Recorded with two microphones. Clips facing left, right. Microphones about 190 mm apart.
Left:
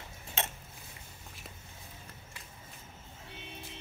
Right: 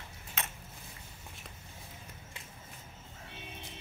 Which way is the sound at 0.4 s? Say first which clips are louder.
Left 5 dB; 30° left (ahead or behind).